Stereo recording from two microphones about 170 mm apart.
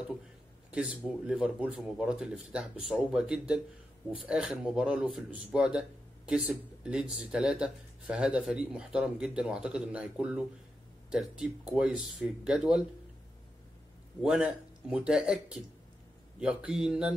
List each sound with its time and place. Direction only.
0.7 s speech: 10° right (ahead or behind)
14.2 s speech: 5° right (ahead or behind)